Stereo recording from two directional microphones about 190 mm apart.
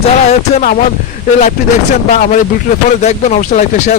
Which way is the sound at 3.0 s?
35° left (ahead or behind).